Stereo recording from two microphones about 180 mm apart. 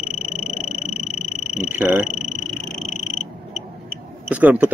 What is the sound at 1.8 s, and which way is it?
Speech, 10° right (ahead or behind).